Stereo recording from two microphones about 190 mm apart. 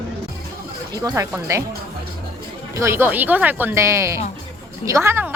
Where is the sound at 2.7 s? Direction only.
15° right (ahead or behind).